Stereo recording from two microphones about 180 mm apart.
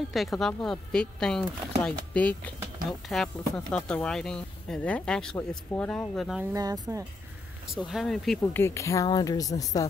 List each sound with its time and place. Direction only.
0.1 s speech: centre (ahead or behind)
6.5 s speech: 20° right (ahead or behind)
7.6 s speech: centre (ahead or behind)
8.5 s speech: 15° left (ahead or behind)